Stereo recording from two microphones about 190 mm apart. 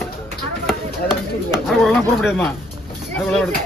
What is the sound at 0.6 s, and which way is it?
Speech, 5° right (ahead or behind).